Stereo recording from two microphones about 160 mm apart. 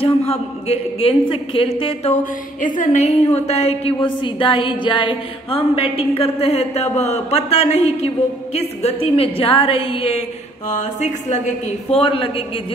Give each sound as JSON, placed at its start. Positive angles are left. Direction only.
{"t": 0.0, "sound": "a woman's voice", "side_deg": 40}
{"t": 2.6, "sound": "a woman's voice", "side_deg": 55}
{"t": 10.7, "sound": "a woman's voice", "side_deg": 50}